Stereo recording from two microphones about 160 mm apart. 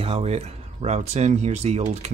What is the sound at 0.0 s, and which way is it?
Speech, 40° right (ahead or behind).